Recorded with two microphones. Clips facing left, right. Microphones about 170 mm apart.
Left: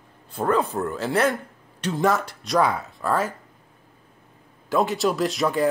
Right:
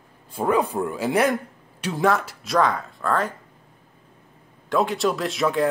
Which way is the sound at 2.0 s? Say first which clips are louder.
Right 1 dB; centre (ahead or behind).